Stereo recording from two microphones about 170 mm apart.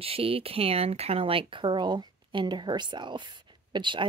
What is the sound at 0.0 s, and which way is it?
Speech, 35° right (ahead or behind).